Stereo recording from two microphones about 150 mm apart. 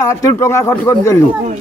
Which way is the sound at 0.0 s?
20° left (ahead or behind).